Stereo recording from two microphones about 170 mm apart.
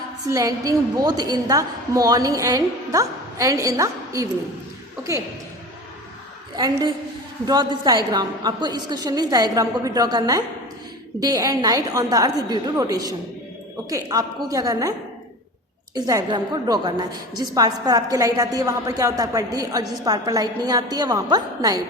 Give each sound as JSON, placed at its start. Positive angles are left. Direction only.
{"t": 0.3, "sound": "a woman's voice", "side_deg": -20}
{"t": 7.4, "sound": "a woman's voice", "side_deg": -25}
{"t": 16.0, "sound": "a woman's voice", "side_deg": -25}